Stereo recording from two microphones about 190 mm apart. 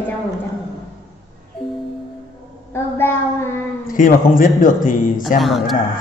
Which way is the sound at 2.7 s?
10° left (ahead or behind).